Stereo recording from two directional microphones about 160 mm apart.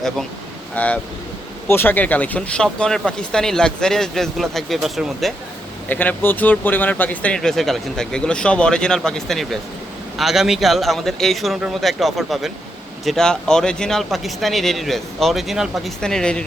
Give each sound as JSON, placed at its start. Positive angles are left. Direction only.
{"t": 0.8, "sound": "speech", "side_deg": 10}
{"t": 5.9, "sound": "speech", "side_deg": 10}